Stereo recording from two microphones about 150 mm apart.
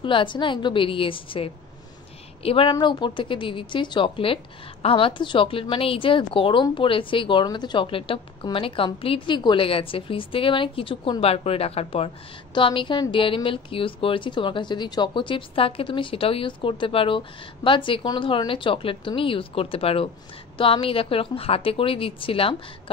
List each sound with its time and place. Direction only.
0.0 s a woman's voice: 35° left (ahead or behind)